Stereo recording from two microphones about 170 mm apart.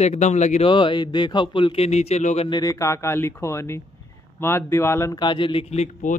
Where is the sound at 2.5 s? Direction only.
20° left (ahead or behind).